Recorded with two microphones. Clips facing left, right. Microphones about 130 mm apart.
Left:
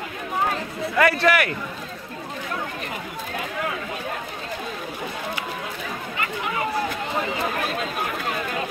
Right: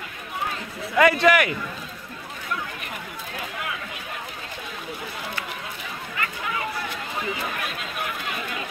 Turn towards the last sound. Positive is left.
turn(degrees=35)  # may be behind; listen again after turning